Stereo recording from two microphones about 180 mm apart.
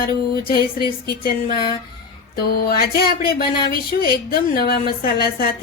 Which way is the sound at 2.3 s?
55° left (ahead or behind).